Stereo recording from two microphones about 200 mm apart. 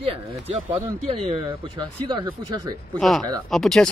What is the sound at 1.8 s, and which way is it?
Speech, 20° right (ahead or behind).